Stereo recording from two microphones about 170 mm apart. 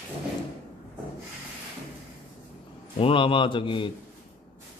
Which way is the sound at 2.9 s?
30° left (ahead or behind).